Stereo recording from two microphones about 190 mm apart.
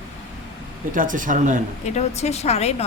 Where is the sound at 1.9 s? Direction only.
35° left (ahead or behind).